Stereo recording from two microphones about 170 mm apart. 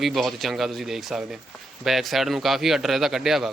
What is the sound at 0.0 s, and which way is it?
Speech, centre (ahead or behind).